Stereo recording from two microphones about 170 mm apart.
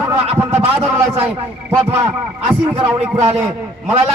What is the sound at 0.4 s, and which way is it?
Speech, 15° right (ahead or behind).